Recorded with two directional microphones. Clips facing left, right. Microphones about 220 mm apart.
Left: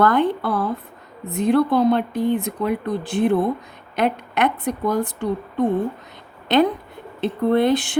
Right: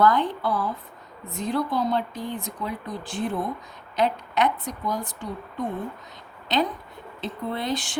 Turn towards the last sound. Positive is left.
turn(degrees=60)  # may be behind; listen again after turning